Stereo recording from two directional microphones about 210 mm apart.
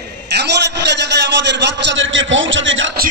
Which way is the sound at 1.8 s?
65° right (ahead or behind).